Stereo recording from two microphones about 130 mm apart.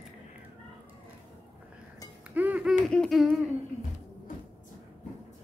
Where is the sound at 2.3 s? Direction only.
10° right (ahead or behind).